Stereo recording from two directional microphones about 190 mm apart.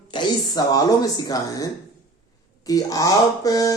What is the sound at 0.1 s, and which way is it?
Speech, 20° left (ahead or behind).